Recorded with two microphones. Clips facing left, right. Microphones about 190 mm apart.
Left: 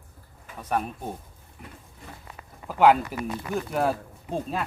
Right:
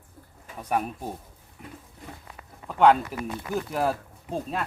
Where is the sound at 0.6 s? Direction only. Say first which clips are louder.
Even; 10° right (ahead or behind).